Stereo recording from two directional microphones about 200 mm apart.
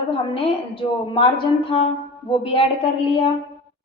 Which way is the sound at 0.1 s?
25° left (ahead or behind).